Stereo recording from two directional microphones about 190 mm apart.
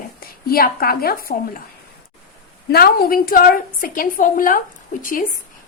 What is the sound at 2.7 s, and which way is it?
A woman's voice, 55° left (ahead or behind).